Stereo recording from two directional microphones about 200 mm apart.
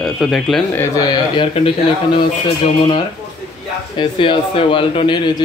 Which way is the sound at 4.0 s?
25° left (ahead or behind).